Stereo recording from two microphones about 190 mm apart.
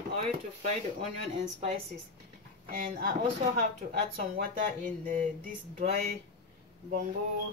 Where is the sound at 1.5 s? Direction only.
40° right (ahead or behind).